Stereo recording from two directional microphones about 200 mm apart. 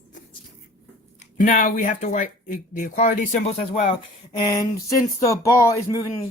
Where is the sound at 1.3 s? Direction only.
40° left (ahead or behind).